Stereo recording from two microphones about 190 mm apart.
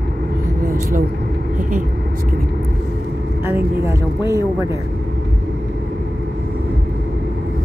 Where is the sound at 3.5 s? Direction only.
15° right (ahead or behind).